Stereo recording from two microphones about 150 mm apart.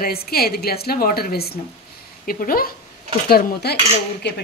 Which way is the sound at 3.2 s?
90° left.